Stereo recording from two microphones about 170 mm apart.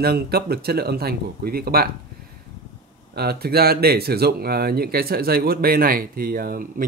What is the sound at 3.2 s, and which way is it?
Speech, 65° right (ahead or behind).